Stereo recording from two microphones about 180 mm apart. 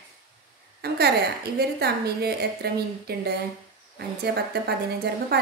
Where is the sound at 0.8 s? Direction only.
60° right (ahead or behind).